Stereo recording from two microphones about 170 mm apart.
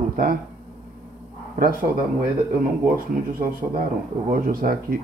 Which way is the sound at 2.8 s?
55° right (ahead or behind).